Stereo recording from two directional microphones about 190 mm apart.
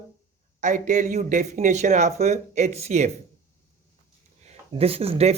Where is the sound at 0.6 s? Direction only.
40° right (ahead or behind).